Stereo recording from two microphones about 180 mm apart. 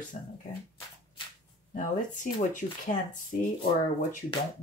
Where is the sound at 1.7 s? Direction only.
45° left (ahead or behind).